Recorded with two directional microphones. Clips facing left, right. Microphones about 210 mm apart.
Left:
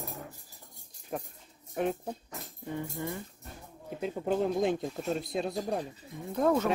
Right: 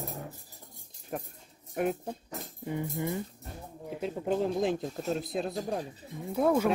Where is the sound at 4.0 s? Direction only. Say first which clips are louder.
Even; centre (ahead or behind).